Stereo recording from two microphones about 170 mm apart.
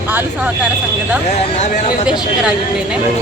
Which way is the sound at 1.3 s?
45° left (ahead or behind).